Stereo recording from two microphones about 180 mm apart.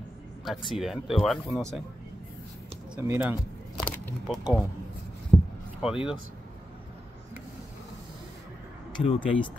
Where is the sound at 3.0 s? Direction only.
10° right (ahead or behind).